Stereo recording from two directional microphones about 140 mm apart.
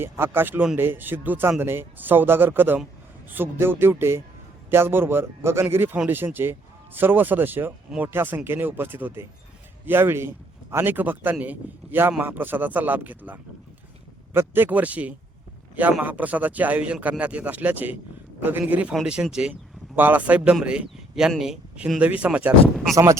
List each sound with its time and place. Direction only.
0.0 s speech: 15° right (ahead or behind)